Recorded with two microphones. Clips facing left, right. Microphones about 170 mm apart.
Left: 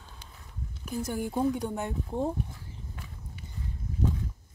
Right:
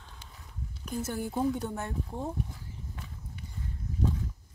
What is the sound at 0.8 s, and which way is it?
Speech, 10° left (ahead or behind).